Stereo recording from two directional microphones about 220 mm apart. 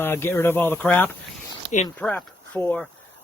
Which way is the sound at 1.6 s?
55° right (ahead or behind).